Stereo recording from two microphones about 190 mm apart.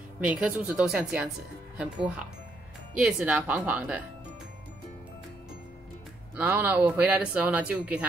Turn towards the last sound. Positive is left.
turn(degrees=-5)  # may be behind; listen again after turning